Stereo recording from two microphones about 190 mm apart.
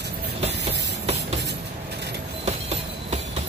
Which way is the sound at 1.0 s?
35° right (ahead or behind).